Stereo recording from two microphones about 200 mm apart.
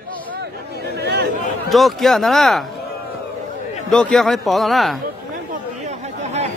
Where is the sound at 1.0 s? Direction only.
55° right (ahead or behind).